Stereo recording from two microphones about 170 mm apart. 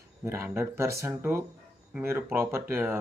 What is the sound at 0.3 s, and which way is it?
Speech, 15° right (ahead or behind).